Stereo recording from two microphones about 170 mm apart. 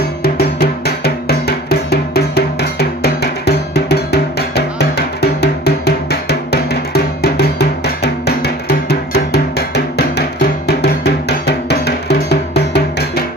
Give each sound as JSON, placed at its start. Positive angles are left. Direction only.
{"t": 0.2, "sound": "music", "side_deg": 65}
{"t": 10.7, "sound": "music", "side_deg": 75}